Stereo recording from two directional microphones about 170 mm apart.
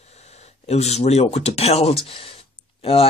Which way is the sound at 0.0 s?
40° left (ahead or behind).